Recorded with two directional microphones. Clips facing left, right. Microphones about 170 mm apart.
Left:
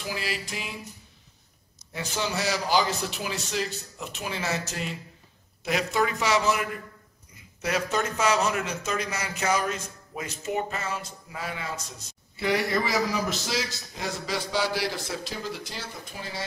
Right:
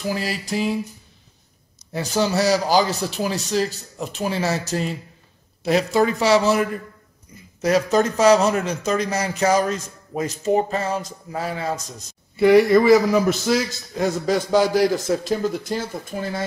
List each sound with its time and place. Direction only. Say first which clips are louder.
0.1 s a man's voice: right 7 dB; 40° right (ahead or behind)
1.9 s a man's voice: right 9 dB; 35° right (ahead or behind)
7.6 s a man's voice: right 9 dB; 40° right (ahead or behind)
12.4 s a man's voice: right 13 dB; 55° right (ahead or behind)